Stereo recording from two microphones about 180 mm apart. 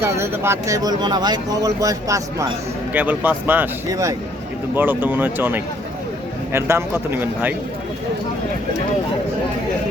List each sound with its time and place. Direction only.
0.0 s a man's voice: 15° right (ahead or behind)